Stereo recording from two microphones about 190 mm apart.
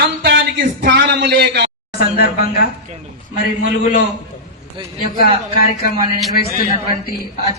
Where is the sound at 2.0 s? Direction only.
55° left (ahead or behind).